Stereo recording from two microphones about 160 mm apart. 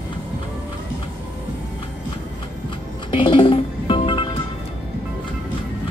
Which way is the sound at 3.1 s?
30° left (ahead or behind).